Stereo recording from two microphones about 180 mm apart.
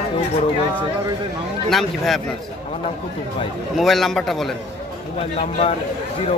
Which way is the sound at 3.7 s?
Centre (ahead or behind).